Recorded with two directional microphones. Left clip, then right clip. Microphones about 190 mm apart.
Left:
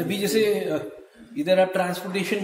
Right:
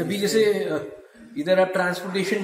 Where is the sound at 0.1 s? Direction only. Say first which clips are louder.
Right 2 dB; 15° left (ahead or behind).